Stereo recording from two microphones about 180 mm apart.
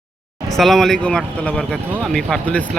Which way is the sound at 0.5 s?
Centre (ahead or behind).